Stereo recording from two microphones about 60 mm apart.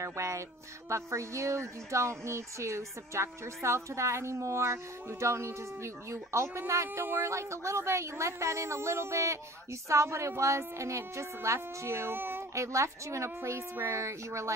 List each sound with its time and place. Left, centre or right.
0.0 s a woman's voice: right
12.5 s a woman's voice: right